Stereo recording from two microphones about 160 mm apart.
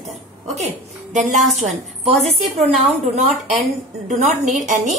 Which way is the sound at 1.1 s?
50° right (ahead or behind).